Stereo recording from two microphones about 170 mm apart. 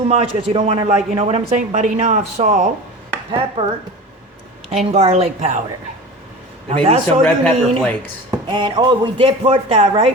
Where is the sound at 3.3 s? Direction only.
30° right (ahead or behind).